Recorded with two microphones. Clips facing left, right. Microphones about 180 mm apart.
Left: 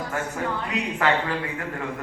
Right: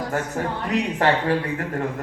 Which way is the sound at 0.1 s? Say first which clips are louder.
Right 1 dB; 40° right (ahead or behind).